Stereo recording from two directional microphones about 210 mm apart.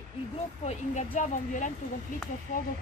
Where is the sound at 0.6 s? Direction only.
35° left (ahead or behind).